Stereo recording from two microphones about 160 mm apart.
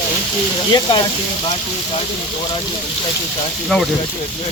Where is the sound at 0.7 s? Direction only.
30° left (ahead or behind).